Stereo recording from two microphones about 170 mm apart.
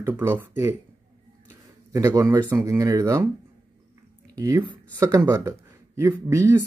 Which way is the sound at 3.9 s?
20° right (ahead or behind).